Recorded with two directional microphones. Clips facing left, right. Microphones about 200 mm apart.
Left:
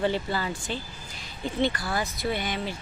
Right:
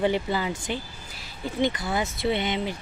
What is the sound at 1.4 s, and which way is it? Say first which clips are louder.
Speech: right 1 dB; 15° right (ahead or behind).